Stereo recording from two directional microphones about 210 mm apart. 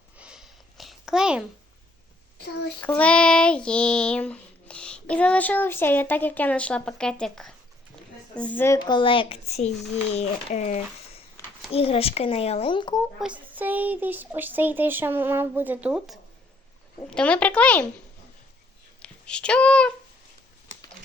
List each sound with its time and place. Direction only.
0.2 s a sound: 5° right (ahead or behind)
2.8 s child singing: 5° left (ahead or behind)
8.4 s speech: 10° left (ahead or behind); by 12.9 s 25° left (ahead or behind)
13.1 s speech: 5° right (ahead or behind)
17.1 s child singing: 5° left (ahead or behind)
19.0 s speech: 5° left (ahead or behind)